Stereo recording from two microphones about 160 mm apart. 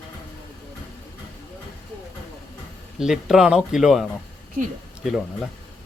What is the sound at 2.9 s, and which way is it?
Speech, 5° right (ahead or behind).